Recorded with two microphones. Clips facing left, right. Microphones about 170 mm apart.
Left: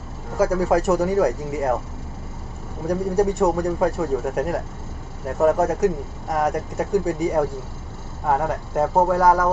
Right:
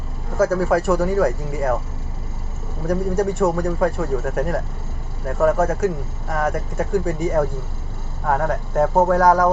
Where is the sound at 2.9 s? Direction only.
15° left (ahead or behind).